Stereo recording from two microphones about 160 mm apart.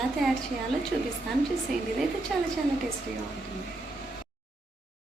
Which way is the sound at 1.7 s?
Centre (ahead or behind).